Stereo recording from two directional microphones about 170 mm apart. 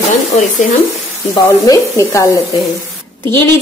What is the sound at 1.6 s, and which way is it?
Speech, 20° left (ahead or behind).